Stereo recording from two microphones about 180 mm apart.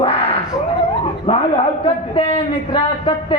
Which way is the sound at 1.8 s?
30° left (ahead or behind).